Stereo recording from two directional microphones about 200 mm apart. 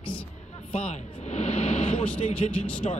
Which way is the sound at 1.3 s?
30° left (ahead or behind).